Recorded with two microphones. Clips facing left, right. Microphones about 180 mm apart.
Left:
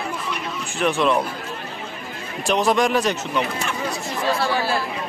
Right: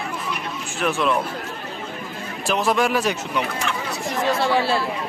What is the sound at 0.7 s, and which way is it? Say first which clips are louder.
Speech: left 2 dB; centre (ahead or behind).